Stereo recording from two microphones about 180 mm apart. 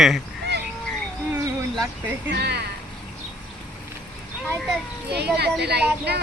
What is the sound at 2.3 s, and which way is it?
Speech, 65° right (ahead or behind).